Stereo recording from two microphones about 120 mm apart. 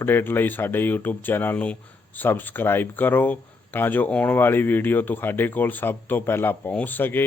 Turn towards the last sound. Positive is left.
turn(degrees=15)  # may be behind; listen again after turning